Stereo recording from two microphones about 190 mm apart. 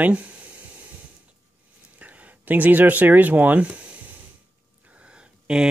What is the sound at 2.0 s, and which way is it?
Speech, 10° right (ahead or behind).